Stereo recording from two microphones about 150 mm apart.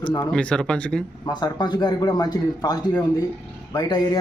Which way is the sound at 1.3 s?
25° left (ahead or behind).